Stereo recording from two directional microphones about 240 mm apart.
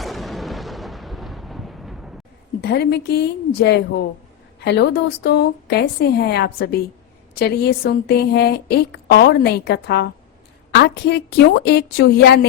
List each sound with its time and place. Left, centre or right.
0.0 s artillery fire: centre
2.6 s a woman's voice: left